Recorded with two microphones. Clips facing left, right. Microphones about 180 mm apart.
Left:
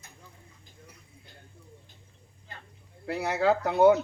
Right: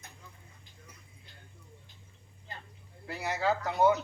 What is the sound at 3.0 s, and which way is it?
Speech, 65° left (ahead or behind).